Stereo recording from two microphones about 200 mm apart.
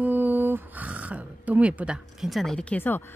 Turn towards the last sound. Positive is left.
turn(degrees=10)  # may be behind; listen again after turning